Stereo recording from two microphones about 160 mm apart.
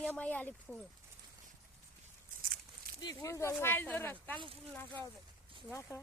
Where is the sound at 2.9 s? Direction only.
70° right (ahead or behind).